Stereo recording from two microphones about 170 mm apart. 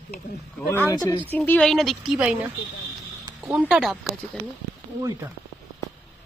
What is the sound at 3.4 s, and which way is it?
Speech, centre (ahead or behind).